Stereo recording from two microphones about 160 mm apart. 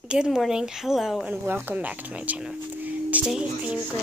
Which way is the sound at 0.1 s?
5° right (ahead or behind).